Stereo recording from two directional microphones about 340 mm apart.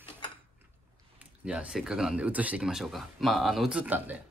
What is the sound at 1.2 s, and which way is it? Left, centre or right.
Speech, centre.